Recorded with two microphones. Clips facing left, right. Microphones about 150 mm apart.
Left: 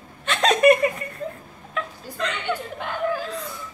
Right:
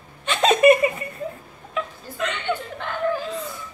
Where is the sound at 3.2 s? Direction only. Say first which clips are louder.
Right 2 dB; 5° right (ahead or behind).